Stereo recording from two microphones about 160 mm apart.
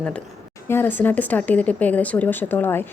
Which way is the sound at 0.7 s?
15° left (ahead or behind).